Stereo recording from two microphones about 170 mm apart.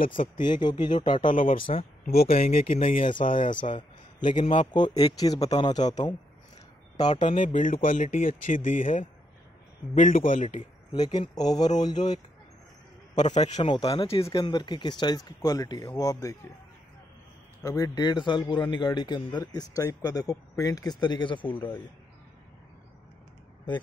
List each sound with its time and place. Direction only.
0.0 s speech: 50° left (ahead or behind)
0.4 s a man's voice: 25° left (ahead or behind)
2.1 s speech: 55° left (ahead or behind)
4.2 s a man's voice: 25° left (ahead or behind)
7.3 s speech: 50° left (ahead or behind)
10.9 s a man's voice: 25° left (ahead or behind)
13.2 s speech: 45° left (ahead or behind)
13.6 s a man's voice: 25° left (ahead or behind)
14.2 s a man's voice: 25° left (ahead or behind)
17.6 s a man's voice: 20° left (ahead or behind)